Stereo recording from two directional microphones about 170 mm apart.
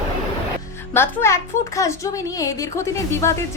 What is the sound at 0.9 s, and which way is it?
A woman's voice, 15° left (ahead or behind).